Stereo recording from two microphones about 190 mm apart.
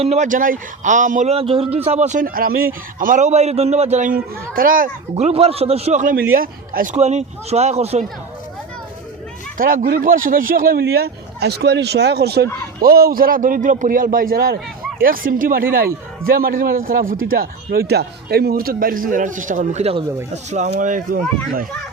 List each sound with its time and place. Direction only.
0.0 s a man's voice: 35° right (ahead or behind)
5.1 s a man's voice: 35° right (ahead or behind); by 6.9 s 50° right (ahead or behind)
6.9 s a man's voice: 35° right (ahead or behind)
9.6 s a man's voice: 50° right (ahead or behind)